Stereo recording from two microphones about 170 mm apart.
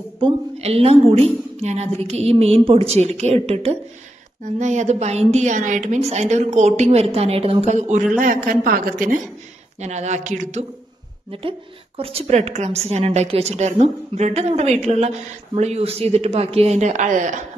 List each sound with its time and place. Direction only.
0.2 s a woman's voice: 35° right (ahead or behind)
7.6 s a woman's voice: 45° right (ahead or behind)
12.0 s a woman's voice: 35° right (ahead or behind)